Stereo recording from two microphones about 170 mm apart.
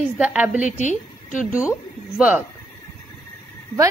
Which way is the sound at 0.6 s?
45° left (ahead or behind).